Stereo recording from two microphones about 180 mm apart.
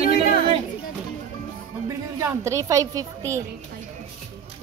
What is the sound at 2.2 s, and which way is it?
A woman's voice, 15° right (ahead or behind).